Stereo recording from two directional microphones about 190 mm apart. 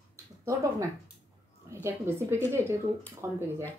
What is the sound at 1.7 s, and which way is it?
A woman's voice, 15° right (ahead or behind).